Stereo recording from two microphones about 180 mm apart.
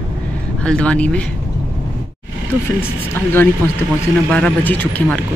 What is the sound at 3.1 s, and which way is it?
Speech, 10° left (ahead or behind).